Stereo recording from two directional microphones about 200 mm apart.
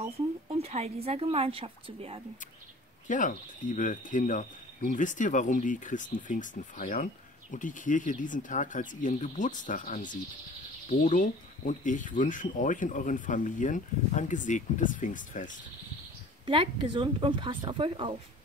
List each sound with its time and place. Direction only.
0.5 s a woman's voice: 30° right (ahead or behind)
3.1 s speech: 40° left (ahead or behind)
16.4 s a woman's voice: 25° right (ahead or behind)